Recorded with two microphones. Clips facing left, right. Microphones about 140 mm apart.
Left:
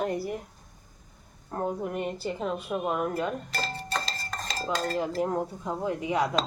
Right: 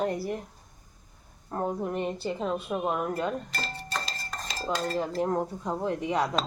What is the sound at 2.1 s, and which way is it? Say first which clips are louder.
Speech: right 1 dB; 25° right (ahead or behind).